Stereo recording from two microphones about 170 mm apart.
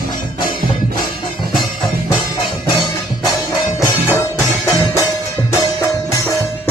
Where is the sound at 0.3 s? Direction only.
25° left (ahead or behind).